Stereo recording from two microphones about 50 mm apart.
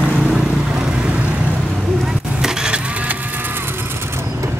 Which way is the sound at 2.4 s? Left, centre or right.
Centre.